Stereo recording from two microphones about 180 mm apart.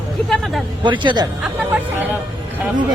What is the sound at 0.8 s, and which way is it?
Speech, 25° right (ahead or behind).